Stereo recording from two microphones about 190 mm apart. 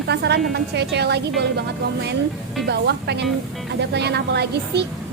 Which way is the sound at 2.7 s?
60° right (ahead or behind).